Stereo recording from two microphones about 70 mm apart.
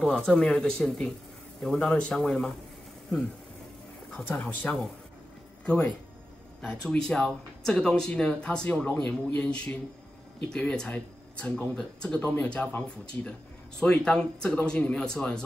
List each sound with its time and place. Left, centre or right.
0.0 s speech: centre
4.4 s speech: centre
12.2 s speech: left